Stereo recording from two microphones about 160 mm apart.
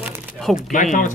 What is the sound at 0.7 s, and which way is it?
Speech, 55° left (ahead or behind).